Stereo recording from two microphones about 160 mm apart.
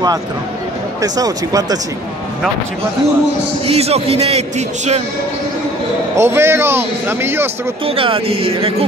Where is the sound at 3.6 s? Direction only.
40° right (ahead or behind).